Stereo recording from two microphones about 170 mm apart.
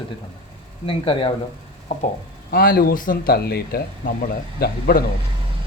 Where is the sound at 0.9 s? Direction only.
35° left (ahead or behind).